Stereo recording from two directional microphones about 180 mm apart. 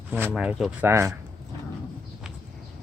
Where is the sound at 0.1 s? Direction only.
10° right (ahead or behind).